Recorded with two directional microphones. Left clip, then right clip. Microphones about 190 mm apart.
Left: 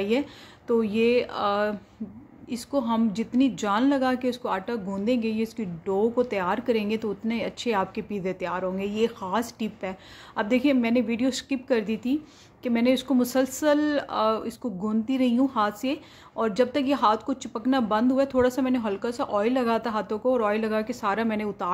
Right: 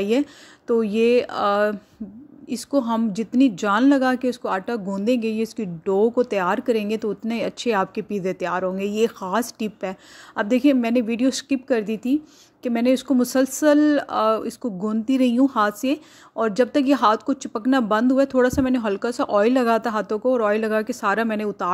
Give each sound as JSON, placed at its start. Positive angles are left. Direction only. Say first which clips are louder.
{"t": 0.0, "sound": "a woman's voice", "louder": "right 4 dB", "side_deg": -35}